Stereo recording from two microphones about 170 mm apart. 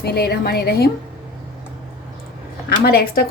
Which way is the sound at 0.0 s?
70° left (ahead or behind).